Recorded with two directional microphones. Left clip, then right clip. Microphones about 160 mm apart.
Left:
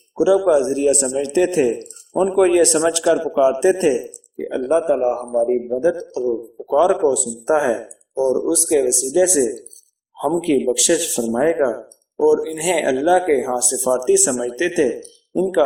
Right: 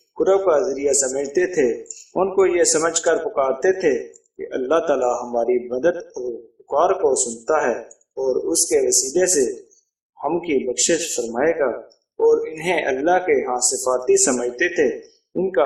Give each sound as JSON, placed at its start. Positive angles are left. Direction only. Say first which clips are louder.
{"t": 0.3, "sound": "speech", "louder": "left 2 dB", "side_deg": 30}
{"t": 4.7, "sound": "a man's voice", "louder": "left 1 dB", "side_deg": 5}
{"t": 5.8, "sound": "a man's voice", "louder": "left 1 dB", "side_deg": 20}
{"t": 6.7, "sound": "speech", "louder": "left 2 dB", "side_deg": 35}